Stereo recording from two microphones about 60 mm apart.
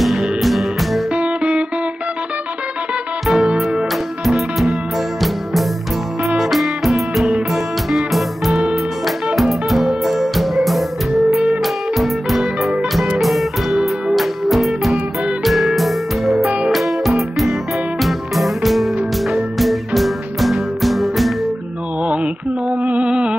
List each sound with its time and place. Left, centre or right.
0.0 s music: centre
1.1 s music: centre
3.3 s music: centre
22.0 s music: right